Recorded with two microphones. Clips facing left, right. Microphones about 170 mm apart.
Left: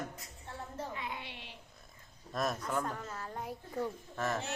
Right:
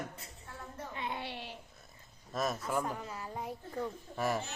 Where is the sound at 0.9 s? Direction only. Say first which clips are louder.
Right 4 dB; 30° right (ahead or behind).